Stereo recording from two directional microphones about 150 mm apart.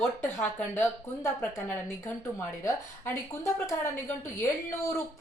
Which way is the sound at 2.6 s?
20° left (ahead or behind).